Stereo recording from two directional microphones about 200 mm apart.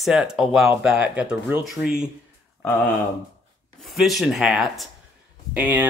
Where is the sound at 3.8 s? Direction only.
Centre (ahead or behind).